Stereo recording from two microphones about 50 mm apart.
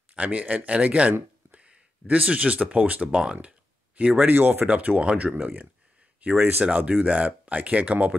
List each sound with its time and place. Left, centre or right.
0.1 s speech: right
1.5 s a sound: right
2.2 s speech: right